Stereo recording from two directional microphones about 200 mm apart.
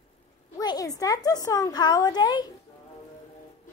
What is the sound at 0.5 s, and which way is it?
A woman's voice, 20° left (ahead or behind).